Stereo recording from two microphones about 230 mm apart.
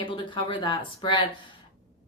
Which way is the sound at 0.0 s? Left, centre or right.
Left.